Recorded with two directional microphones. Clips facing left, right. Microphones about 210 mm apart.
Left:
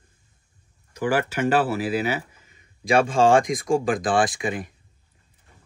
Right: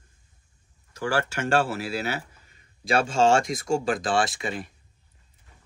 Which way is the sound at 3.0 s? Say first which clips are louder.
Left 1 dB; 50° left (ahead or behind).